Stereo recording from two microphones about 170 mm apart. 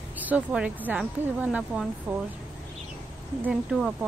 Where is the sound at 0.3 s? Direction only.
5° right (ahead or behind).